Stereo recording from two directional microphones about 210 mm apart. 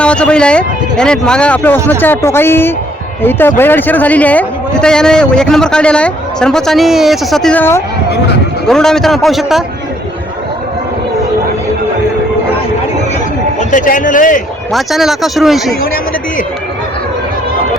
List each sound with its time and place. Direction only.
0.0 s a man's voice: 5° left (ahead or behind)
13.6 s a man's voice: 40° left (ahead or behind)
14.7 s a man's voice: centre (ahead or behind)